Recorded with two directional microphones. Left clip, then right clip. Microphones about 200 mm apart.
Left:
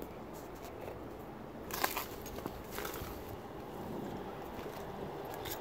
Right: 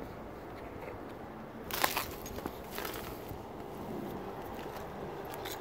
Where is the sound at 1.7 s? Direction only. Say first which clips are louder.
Right 4 dB; 45° right (ahead or behind).